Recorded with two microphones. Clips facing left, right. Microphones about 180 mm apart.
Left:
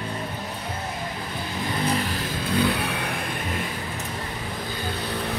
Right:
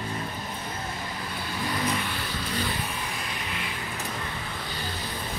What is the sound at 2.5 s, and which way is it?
Vehicle, 70° left (ahead or behind).